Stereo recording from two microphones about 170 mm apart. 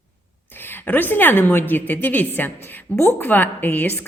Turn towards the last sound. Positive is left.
turn(degrees=10)  # may be behind; listen again after turning